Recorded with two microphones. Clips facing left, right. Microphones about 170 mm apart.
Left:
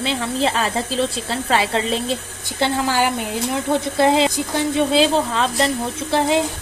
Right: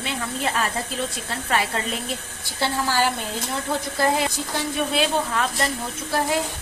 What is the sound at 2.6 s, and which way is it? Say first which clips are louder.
Speech: left 4 dB; 15° left (ahead or behind).